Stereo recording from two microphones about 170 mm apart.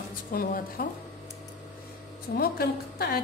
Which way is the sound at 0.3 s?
60° left (ahead or behind).